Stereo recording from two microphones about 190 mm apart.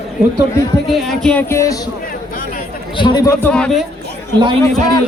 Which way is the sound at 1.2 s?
5° left (ahead or behind).